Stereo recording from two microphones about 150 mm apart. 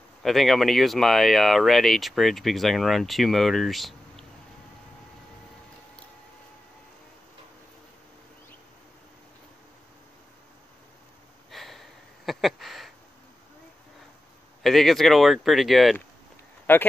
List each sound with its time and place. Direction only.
0.2 s speech: centre (ahead or behind)
11.5 s a sound: centre (ahead or behind)
14.6 s speech: centre (ahead or behind)
16.7 s speech: 15° left (ahead or behind)